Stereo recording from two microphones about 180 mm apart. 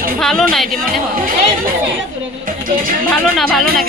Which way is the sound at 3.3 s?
Centre (ahead or behind).